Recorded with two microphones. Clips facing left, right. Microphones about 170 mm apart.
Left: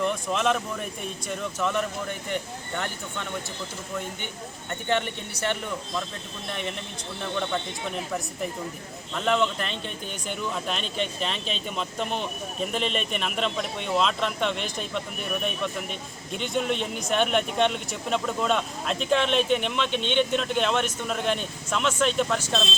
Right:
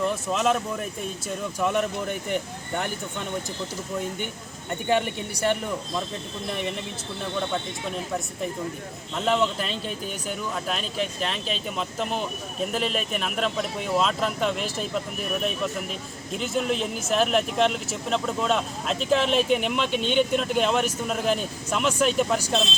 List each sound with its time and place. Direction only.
0.0 s speech: centre (ahead or behind)
1.5 s speech: 15° right (ahead or behind)
9.1 s speech: 5° right (ahead or behind)